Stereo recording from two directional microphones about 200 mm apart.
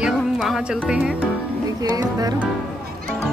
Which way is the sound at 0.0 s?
Centre (ahead or behind).